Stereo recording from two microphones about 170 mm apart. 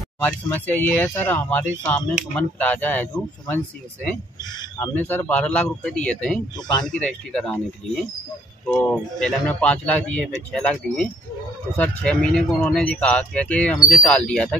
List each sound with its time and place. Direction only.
0.2 s speech: 10° left (ahead or behind)